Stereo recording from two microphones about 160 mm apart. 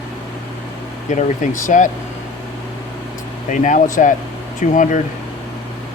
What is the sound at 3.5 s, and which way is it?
Speech, 50° left (ahead or behind).